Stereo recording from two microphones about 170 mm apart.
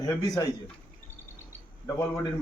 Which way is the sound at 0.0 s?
20° left (ahead or behind).